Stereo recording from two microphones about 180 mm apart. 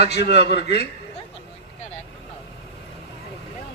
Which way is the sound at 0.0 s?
65° left (ahead or behind).